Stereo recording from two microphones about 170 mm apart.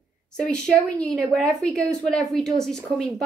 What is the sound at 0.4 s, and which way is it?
A woman's voice, 5° left (ahead or behind).